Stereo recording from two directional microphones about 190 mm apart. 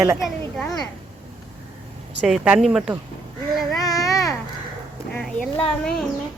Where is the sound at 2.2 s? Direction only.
5° right (ahead or behind).